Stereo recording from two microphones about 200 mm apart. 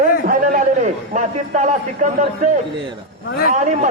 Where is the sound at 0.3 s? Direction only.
40° right (ahead or behind).